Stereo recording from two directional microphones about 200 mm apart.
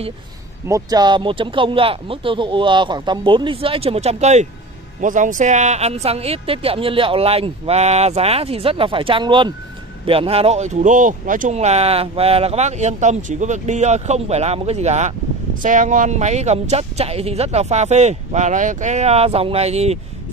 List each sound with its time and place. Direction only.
0.7 s speech: 15° right (ahead or behind)